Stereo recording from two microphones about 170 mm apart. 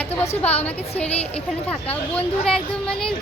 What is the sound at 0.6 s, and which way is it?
A woman's voice, 10° left (ahead or behind).